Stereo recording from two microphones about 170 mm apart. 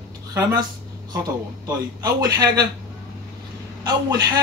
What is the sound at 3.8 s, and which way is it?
Speech, 25° right (ahead or behind).